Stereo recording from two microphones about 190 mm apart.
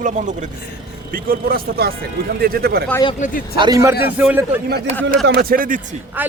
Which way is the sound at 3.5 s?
20° right (ahead or behind).